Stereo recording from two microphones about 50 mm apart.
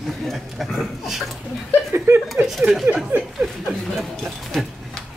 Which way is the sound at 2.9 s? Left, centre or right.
Right.